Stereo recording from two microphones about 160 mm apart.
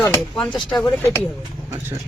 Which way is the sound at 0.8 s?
15° left (ahead or behind).